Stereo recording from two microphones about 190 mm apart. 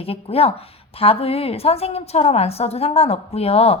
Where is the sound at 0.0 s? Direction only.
30° left (ahead or behind).